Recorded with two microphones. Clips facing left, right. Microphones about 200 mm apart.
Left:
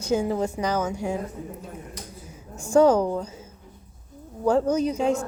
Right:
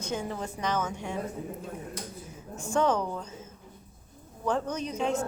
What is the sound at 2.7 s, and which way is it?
Speech, 35° left (ahead or behind).